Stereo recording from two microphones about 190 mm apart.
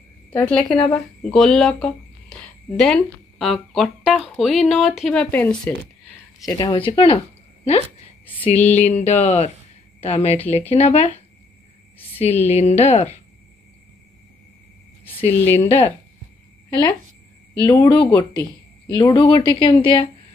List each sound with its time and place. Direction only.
0.3 s speech: 10° left (ahead or behind)
6.4 s speech: 20° left (ahead or behind)
8.3 s a woman's voice: 30° left (ahead or behind)
12.2 s a woman's voice: 35° left (ahead or behind)
15.0 s a sound: 30° left (ahead or behind)
15.4 s speech: 10° left (ahead or behind)
17.6 s speech: 20° left (ahead or behind)